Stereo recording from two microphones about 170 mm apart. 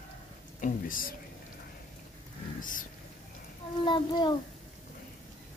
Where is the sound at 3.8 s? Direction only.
25° left (ahead or behind).